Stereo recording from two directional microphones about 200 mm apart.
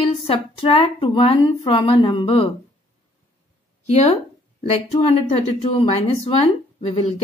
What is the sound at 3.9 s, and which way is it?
A woman's voice, 35° left (ahead or behind).